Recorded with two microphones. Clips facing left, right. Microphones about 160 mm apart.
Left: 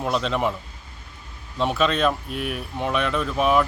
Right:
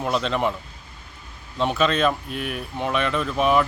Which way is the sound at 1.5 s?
Centre (ahead or behind).